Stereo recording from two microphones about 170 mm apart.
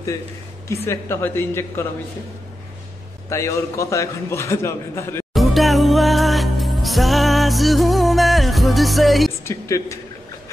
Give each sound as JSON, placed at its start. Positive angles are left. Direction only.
{"t": 0.8, "sound": "a man's voice", "side_deg": 15}
{"t": 3.3, "sound": "a man's voice", "side_deg": 15}
{"t": 5.3, "sound": "music", "side_deg": 0}
{"t": 9.4, "sound": "a man's voice", "side_deg": 15}